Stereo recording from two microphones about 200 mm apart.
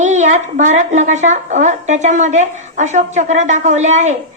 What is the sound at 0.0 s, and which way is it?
A woman's voice, 35° right (ahead or behind).